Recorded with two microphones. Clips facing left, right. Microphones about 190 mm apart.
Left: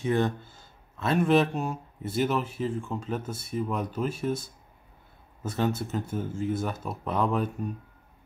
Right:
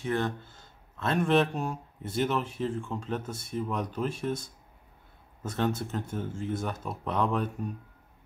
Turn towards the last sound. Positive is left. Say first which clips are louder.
# left 2 dB
turn(degrees=5)  # may be behind; listen again after turning